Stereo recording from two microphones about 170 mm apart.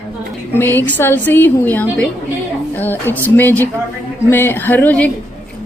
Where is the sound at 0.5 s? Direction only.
10° left (ahead or behind).